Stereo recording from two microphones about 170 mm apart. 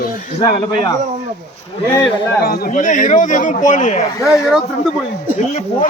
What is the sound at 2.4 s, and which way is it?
Speech, 60° left (ahead or behind).